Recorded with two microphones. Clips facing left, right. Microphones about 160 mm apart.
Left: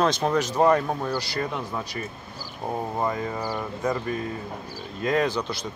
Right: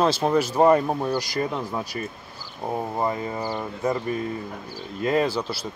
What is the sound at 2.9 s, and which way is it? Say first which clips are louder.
Speech: right 1 dB; 10° right (ahead or behind).